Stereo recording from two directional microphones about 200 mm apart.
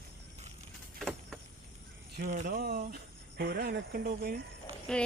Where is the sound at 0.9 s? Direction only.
Centre (ahead or behind).